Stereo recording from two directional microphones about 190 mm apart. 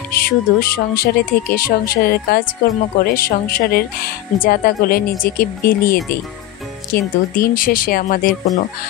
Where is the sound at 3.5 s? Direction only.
50° left (ahead or behind).